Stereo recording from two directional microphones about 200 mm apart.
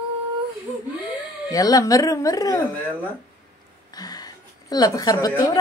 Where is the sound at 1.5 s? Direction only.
20° left (ahead or behind).